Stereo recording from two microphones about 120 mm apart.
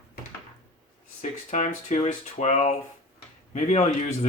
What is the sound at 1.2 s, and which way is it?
Speech, 80° left.